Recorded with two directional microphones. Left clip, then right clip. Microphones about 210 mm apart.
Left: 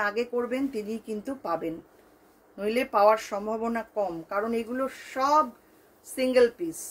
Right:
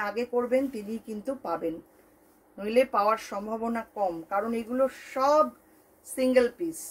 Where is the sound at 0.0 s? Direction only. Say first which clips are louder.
Left 1 dB; 15° left (ahead or behind).